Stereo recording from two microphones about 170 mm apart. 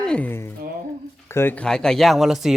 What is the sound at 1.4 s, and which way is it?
Speech, 10° left (ahead or behind).